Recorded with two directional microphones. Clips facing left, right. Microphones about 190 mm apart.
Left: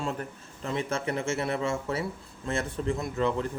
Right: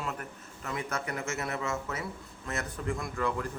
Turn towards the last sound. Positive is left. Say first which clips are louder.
# left 4 dB
turn(degrees=25)  # may be behind; listen again after turning